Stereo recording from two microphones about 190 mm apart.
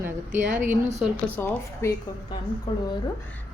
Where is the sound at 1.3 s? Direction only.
10° left (ahead or behind).